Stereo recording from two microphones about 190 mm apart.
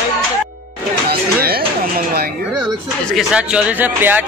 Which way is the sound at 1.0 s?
55° right (ahead or behind).